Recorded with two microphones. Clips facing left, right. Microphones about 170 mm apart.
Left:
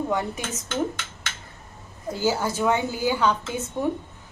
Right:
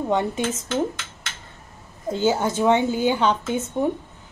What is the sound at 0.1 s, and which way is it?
Speech, 25° right (ahead or behind).